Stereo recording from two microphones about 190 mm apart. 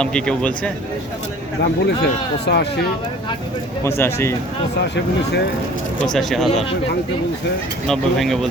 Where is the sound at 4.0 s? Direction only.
15° left (ahead or behind).